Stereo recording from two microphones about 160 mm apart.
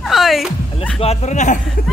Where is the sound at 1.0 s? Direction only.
40° left (ahead or behind).